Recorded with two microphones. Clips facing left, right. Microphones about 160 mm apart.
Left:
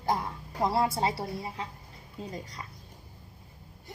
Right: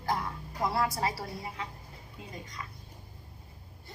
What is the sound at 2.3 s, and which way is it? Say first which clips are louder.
Speech: left 3 dB; 35° left (ahead or behind).